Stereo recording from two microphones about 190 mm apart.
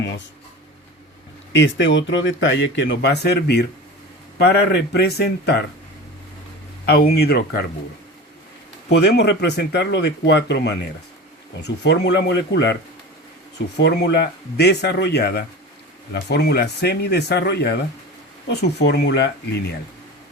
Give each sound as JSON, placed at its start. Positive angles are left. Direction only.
{"t": 1.5, "sound": "a man's voice", "side_deg": 75}
{"t": 6.8, "sound": "speech", "side_deg": 55}
{"t": 9.0, "sound": "speech", "side_deg": 60}
{"t": 13.7, "sound": "speech", "side_deg": 60}